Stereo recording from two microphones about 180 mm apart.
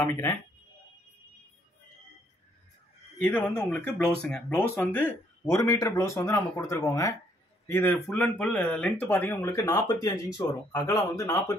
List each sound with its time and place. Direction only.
3.2 s speech: 10° left (ahead or behind)